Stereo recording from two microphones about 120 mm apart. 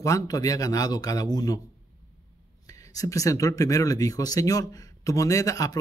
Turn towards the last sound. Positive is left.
turn(degrees=30)  # may be behind; listen again after turning